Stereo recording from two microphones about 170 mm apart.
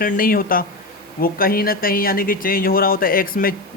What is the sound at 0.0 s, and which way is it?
Speech, 55° left (ahead or behind).